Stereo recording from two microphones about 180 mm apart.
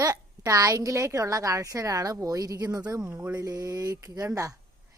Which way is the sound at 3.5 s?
20° right (ahead or behind).